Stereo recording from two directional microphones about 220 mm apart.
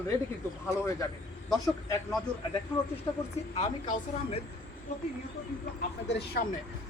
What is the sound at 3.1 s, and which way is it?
A woman's voice, 20° left (ahead or behind).